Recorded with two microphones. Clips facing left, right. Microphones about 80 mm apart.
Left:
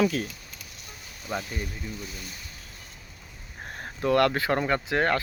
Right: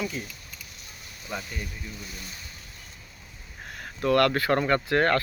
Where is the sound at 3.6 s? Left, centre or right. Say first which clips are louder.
Left 2 dB; left.